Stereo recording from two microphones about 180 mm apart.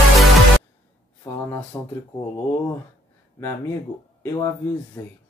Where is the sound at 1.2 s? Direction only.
15° left (ahead or behind).